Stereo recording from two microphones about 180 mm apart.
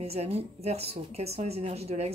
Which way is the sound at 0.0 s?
35° right (ahead or behind).